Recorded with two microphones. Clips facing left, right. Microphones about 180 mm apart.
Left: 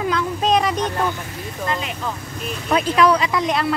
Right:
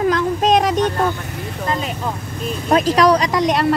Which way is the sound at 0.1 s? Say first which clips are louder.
Right 3 dB; 45° right (ahead or behind).